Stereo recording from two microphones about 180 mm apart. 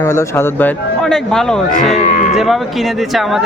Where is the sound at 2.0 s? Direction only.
40° left (ahead or behind).